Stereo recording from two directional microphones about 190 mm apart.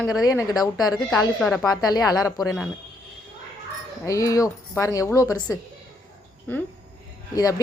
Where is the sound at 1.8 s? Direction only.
20° left (ahead or behind).